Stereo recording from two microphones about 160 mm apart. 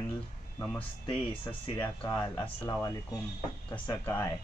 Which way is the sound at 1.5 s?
10° left (ahead or behind).